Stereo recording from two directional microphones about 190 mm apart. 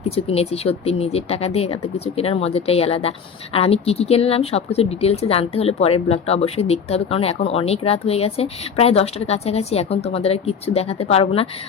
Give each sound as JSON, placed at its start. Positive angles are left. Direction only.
{"t": 0.3, "sound": "speech", "side_deg": 30}